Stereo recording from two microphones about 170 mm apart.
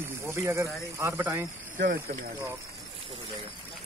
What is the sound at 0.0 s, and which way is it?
Snake, 15° right (ahead or behind).